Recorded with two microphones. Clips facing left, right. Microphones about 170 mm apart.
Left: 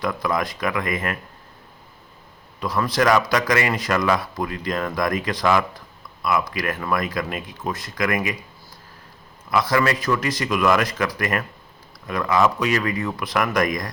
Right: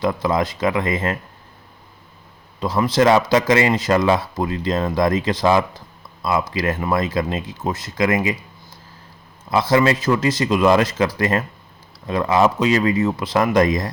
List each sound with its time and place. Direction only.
0.0 s a man's voice: 25° right (ahead or behind)
2.6 s a man's voice: 25° right (ahead or behind)
9.5 s a man's voice: 25° right (ahead or behind)